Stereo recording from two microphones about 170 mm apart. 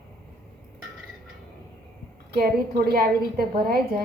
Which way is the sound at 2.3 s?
65° right (ahead or behind).